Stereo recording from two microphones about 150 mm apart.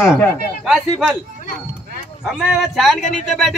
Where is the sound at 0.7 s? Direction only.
Centre (ahead or behind).